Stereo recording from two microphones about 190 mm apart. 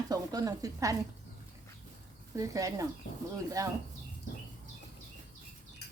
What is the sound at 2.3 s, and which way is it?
A woman's voice, 15° right (ahead or behind).